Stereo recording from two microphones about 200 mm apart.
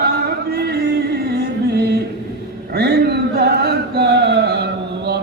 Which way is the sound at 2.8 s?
55° right (ahead or behind).